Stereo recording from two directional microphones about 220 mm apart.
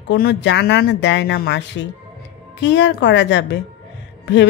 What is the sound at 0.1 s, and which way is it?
Speech, 45° left (ahead or behind).